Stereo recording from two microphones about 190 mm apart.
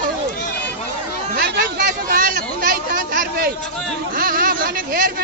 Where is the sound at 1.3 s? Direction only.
60° right (ahead or behind).